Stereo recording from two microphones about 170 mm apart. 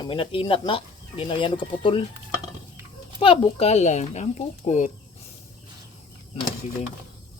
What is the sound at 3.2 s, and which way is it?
Speech, 30° left (ahead or behind).